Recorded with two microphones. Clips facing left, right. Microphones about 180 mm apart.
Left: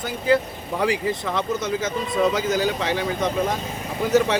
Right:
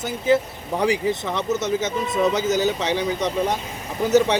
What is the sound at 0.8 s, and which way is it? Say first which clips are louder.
Speech: right 2 dB; 20° right (ahead or behind).